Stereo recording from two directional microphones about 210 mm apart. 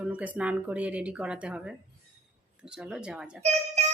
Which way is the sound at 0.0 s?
5° right (ahead or behind).